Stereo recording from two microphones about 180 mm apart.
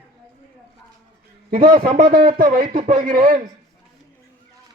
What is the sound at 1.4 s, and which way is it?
A man's voice, 50° right (ahead or behind).